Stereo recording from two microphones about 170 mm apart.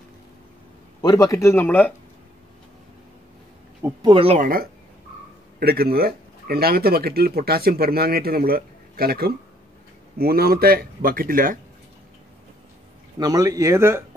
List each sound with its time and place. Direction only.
1.0 s speech: 20° left (ahead or behind)
4.0 s speech: 30° right (ahead or behind)
4.4 s speech: 60° right (ahead or behind)
13.2 s speech: 20° right (ahead or behind)